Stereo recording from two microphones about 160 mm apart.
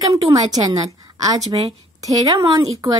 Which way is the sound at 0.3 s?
25° right (ahead or behind).